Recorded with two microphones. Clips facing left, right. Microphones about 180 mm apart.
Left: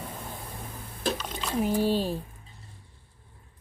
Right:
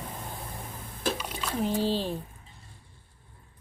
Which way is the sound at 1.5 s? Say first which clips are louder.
Left 2 dB; 10° left (ahead or behind).